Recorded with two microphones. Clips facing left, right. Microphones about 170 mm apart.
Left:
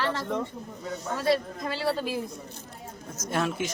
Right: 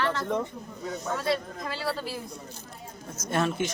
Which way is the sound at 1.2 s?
25° left (ahead or behind).